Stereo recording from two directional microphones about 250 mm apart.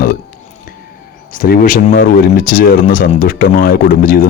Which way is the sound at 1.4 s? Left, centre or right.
Left.